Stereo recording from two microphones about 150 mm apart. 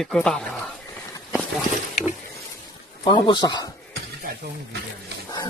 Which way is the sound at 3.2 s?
30° left (ahead or behind).